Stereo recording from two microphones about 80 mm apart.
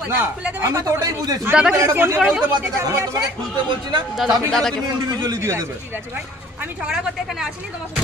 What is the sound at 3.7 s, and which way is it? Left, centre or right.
Speech, right.